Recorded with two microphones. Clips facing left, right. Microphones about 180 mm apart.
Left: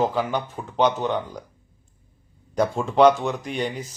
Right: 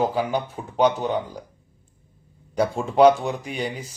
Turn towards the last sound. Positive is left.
turn(degrees=-10)  # may be behind; listen again after turning